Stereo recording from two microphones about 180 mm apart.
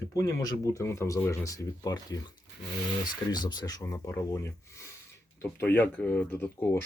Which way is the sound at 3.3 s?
25° left (ahead or behind).